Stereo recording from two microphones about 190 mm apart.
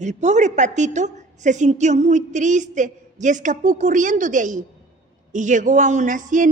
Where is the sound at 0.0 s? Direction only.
40° right (ahead or behind).